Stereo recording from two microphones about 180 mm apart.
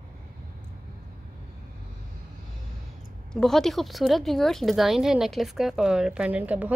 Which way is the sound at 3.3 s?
Centre (ahead or behind).